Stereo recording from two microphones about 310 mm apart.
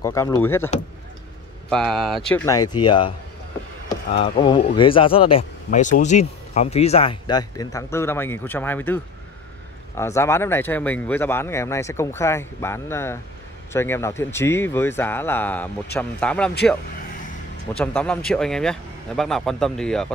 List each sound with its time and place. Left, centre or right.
0.0 s speech: centre
1.7 s speech: centre
4.1 s speech: centre
17.7 s speech: centre